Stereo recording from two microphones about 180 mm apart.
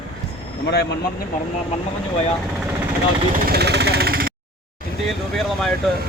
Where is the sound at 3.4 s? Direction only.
65° right (ahead or behind).